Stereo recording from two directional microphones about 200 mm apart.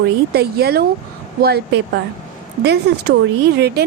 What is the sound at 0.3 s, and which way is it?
A woman's voice, 50° right (ahead or behind).